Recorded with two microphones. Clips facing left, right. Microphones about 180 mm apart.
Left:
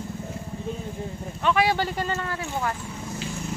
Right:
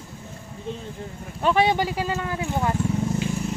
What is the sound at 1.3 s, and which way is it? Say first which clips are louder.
Speech: right 2 dB; 35° right (ahead or behind).